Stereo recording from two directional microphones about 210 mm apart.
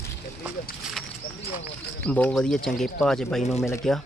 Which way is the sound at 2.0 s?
5° left (ahead or behind).